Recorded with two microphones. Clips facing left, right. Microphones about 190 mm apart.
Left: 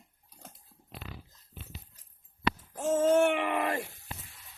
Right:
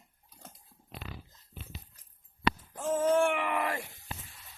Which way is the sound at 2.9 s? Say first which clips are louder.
Left 2 dB; 25° left (ahead or behind).